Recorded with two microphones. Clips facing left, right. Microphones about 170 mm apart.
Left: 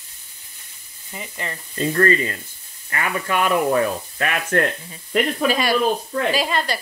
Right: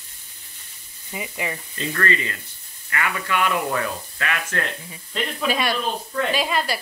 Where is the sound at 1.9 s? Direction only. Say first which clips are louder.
Left 6 dB; 35° left (ahead or behind).